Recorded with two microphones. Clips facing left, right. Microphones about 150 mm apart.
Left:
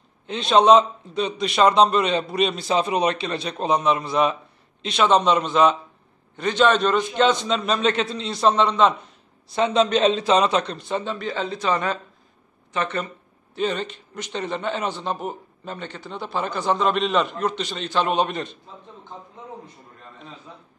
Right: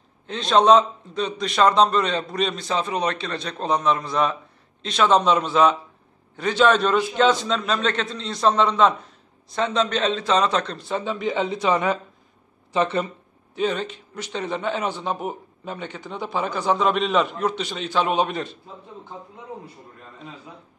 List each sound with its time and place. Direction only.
0.3 s a man's voice: 5° left (ahead or behind)
7.6 s a man's voice: 10° left (ahead or behind)
9.6 s a man's voice: 15° left (ahead or behind)
10.8 s a man's voice: 5° right (ahead or behind)
11.1 s a man's voice: 15° right (ahead or behind)